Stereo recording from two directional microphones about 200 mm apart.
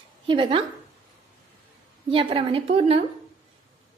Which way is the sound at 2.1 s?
25° right (ahead or behind).